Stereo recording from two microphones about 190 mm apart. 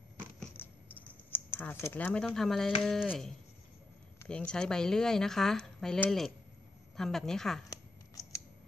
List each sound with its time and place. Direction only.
0.2 s a sound: 10° left (ahead or behind)
2.2 s speech: centre (ahead or behind)
7.7 s scissors: 15° left (ahead or behind)